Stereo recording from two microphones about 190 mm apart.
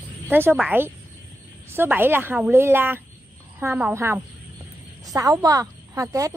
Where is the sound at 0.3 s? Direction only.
10° right (ahead or behind).